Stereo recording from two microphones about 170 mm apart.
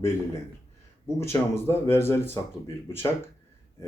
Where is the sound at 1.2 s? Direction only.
15° left (ahead or behind).